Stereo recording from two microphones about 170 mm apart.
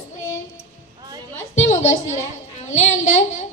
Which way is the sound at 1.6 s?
45° left (ahead or behind).